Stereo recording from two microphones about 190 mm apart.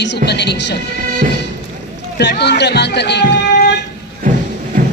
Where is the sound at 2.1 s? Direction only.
60° left (ahead or behind).